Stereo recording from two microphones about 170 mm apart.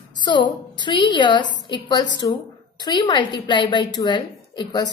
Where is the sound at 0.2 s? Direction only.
25° left (ahead or behind).